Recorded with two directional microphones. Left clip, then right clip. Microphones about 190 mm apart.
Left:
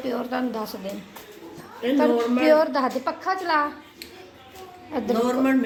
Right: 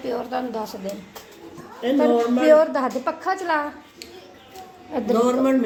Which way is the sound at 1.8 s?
20° right (ahead or behind).